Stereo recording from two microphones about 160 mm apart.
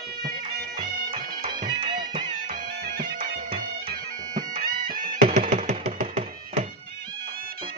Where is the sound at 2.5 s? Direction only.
70° right (ahead or behind).